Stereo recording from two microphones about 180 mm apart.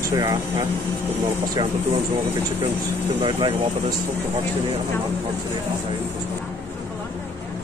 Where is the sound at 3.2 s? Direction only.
25° right (ahead or behind).